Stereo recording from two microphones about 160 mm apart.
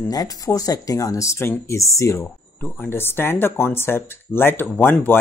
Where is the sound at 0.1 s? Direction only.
25° left (ahead or behind).